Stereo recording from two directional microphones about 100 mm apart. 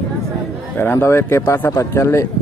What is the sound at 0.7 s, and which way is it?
Speech, 25° left (ahead or behind).